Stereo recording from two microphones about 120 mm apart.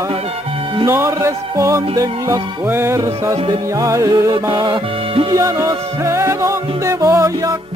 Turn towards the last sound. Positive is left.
turn(degrees=-25)  # may be behind; listen again after turning